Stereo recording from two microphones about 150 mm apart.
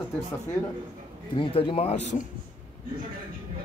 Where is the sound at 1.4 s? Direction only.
35° left (ahead or behind).